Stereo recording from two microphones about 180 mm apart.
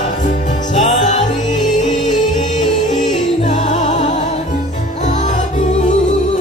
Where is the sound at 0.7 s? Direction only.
40° left (ahead or behind).